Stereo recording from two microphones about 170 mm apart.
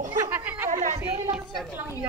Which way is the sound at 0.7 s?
45° right (ahead or behind).